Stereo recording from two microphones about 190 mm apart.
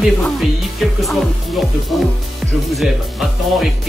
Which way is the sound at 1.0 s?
Centre (ahead or behind).